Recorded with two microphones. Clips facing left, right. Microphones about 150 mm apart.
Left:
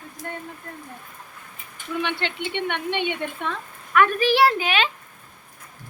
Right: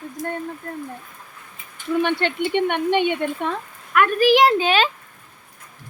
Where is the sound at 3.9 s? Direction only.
10° right (ahead or behind).